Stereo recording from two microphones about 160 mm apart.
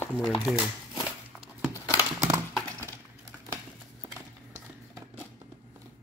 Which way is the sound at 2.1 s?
20° right (ahead or behind).